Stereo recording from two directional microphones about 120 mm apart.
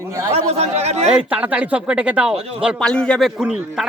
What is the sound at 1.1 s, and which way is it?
Speech, 10° right (ahead or behind).